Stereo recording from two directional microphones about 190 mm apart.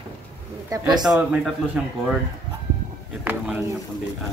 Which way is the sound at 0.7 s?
20° right (ahead or behind).